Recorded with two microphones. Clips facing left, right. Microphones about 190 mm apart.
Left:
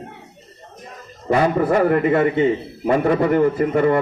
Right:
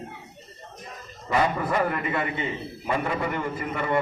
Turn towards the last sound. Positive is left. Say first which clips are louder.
# left 10 dB
turn(degrees=45)  # may be behind; listen again after turning